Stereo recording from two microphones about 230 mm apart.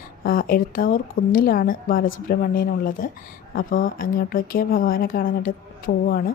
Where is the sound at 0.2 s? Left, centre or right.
Left.